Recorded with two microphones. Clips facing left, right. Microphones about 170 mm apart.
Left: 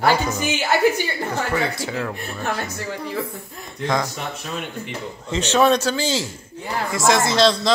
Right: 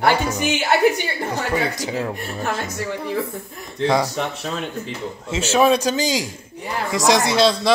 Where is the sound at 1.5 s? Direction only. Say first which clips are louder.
Right 1 dB; 15° right (ahead or behind).